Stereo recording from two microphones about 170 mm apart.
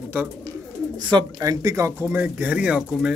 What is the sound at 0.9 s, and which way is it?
Speech, 25° right (ahead or behind).